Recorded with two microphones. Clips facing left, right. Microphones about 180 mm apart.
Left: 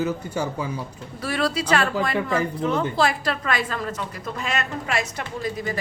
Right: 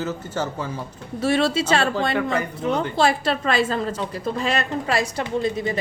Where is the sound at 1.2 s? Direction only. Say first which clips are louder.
Right 5 dB; 25° right (ahead or behind).